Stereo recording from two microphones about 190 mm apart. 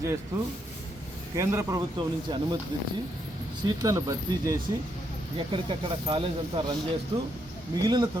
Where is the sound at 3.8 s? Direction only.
20° right (ahead or behind).